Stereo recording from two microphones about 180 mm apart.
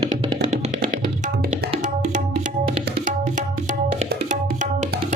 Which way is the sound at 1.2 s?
45° right (ahead or behind).